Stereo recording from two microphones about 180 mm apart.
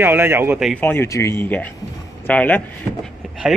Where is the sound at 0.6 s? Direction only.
5° left (ahead or behind).